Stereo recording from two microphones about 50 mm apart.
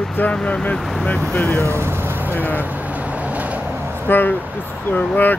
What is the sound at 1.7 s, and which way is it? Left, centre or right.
Vehicle, right.